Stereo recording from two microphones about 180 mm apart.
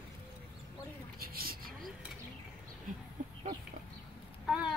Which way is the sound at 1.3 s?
55° right (ahead or behind).